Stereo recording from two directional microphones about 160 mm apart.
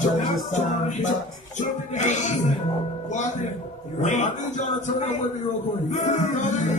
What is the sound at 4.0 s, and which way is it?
Music, 50° left (ahead or behind).